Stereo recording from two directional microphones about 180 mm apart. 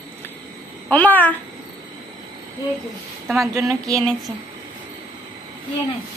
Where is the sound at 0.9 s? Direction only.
10° left (ahead or behind).